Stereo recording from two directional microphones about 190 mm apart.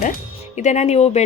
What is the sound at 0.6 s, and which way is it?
Speech, 35° left (ahead or behind).